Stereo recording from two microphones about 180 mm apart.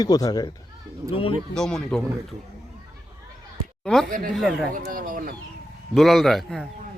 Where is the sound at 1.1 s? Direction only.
30° left (ahead or behind).